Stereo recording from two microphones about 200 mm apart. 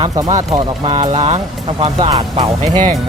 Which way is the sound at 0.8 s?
30° right (ahead or behind).